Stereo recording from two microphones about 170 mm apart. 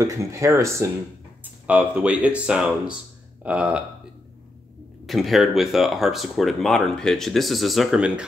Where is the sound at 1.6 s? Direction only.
5° right (ahead or behind).